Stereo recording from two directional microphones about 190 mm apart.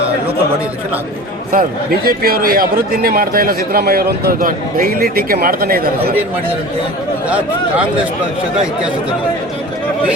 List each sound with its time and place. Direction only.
1.5 s speech: 50° right (ahead or behind)